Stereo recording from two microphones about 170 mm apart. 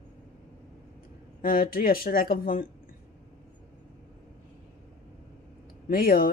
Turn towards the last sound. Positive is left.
turn(degrees=60)  # may be behind; listen again after turning